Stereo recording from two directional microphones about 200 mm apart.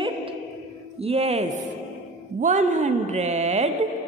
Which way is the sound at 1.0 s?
30° right (ahead or behind).